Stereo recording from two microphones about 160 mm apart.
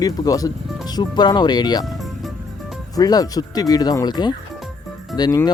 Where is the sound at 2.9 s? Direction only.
25° left (ahead or behind).